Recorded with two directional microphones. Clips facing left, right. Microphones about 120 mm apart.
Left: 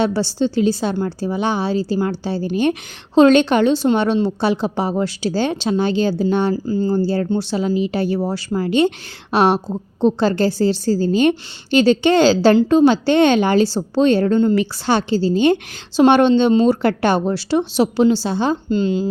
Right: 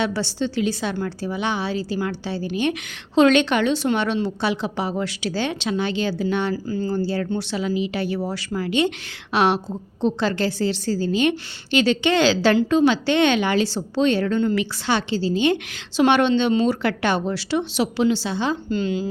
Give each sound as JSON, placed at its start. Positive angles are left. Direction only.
{"t": 0.0, "sound": "a woman's voice", "side_deg": 35}
{"t": 18.7, "sound": "speech", "side_deg": 30}